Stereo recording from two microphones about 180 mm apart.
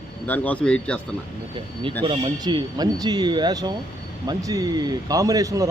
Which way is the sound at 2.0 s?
25° right (ahead or behind).